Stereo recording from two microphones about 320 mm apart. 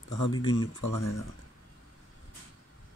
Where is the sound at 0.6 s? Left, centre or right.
Left.